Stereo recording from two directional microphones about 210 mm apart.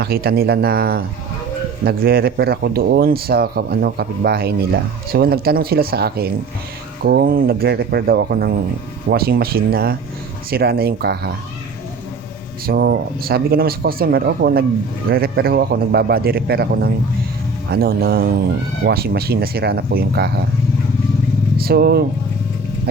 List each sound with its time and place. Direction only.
0.0 s speech: 50° right (ahead or behind)
12.6 s speech: 45° right (ahead or behind)
21.6 s speech: 45° right (ahead or behind)